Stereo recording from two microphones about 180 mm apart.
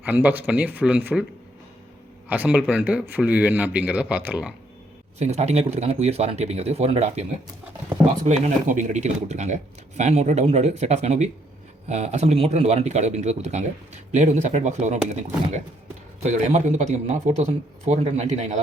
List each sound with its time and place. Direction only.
0.0 s a man's voice: 10° right (ahead or behind)
2.3 s a man's voice: 10° right (ahead or behind)
5.2 s speech: 40° right (ahead or behind)